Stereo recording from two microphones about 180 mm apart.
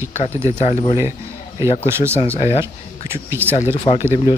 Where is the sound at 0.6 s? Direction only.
40° left (ahead or behind).